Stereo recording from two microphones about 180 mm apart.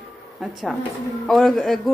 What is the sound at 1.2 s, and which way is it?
Speech, centre (ahead or behind).